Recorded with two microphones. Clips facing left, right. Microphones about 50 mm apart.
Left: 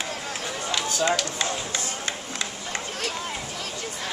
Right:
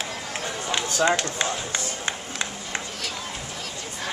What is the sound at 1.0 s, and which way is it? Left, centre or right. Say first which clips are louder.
Speech: right 3 dB; right.